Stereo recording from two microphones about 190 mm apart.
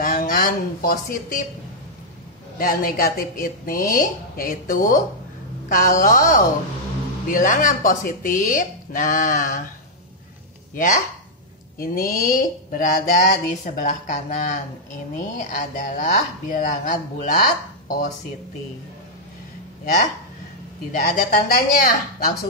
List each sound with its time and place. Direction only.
0.0 s a woman's voice: 45° left (ahead or behind)
2.6 s a woman's voice: 50° left (ahead or behind)
10.7 s a woman's voice: 45° left (ahead or behind)
20.9 s a woman's voice: 50° left (ahead or behind)